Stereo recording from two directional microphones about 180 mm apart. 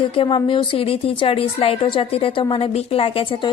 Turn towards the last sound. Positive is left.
turn(degrees=30)  # may be behind; listen again after turning